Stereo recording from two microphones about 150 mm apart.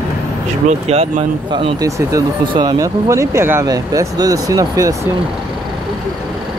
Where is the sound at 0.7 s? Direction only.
45° right (ahead or behind).